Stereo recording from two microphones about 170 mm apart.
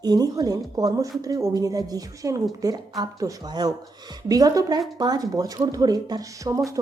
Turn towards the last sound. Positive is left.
turn(degrees=-20)  # may be behind; listen again after turning